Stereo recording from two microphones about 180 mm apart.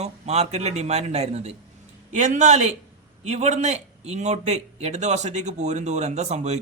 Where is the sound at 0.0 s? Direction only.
35° right (ahead or behind).